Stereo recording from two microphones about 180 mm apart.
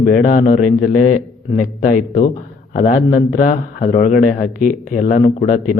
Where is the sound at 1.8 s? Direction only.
50° left (ahead or behind).